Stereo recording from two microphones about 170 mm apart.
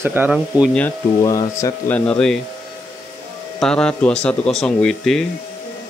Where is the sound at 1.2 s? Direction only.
20° left (ahead or behind).